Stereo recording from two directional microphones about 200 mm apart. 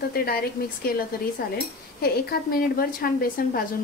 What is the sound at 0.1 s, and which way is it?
Speech, 50° left (ahead or behind).